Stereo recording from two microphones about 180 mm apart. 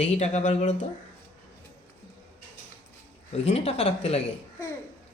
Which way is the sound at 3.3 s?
35° left (ahead or behind).